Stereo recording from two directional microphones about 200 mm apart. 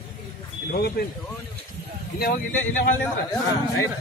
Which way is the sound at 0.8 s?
50° left (ahead or behind).